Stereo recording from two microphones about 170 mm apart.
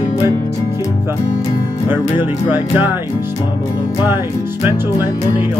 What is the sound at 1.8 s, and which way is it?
Speech, 10° right (ahead or behind).